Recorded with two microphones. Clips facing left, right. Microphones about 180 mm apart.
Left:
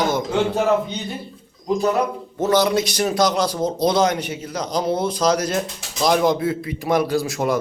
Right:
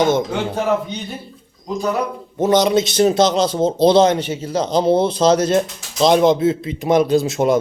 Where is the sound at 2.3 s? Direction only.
20° right (ahead or behind).